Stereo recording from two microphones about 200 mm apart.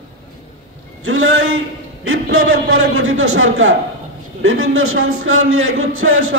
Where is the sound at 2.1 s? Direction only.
90° right.